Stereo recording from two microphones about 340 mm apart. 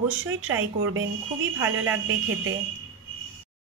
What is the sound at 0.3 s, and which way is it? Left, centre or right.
Speech, right.